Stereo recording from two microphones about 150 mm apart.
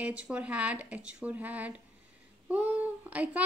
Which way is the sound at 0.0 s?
10° right (ahead or behind).